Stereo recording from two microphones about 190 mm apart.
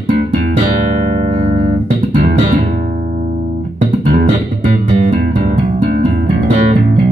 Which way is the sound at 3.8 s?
40° right (ahead or behind).